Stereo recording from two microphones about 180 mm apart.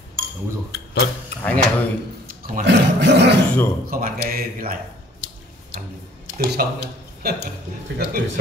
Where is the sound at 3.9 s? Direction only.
50° right (ahead or behind).